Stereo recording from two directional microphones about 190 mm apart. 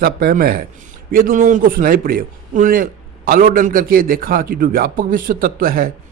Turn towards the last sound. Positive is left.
turn(degrees=-50)  # may be behind; listen again after turning